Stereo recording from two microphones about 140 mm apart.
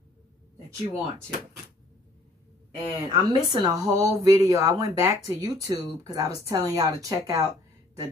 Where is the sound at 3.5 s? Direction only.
30° right (ahead or behind).